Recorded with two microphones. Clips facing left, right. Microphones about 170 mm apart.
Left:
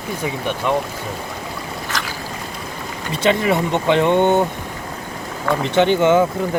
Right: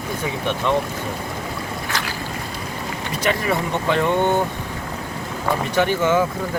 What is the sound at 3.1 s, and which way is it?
Speech, 25° left (ahead or behind).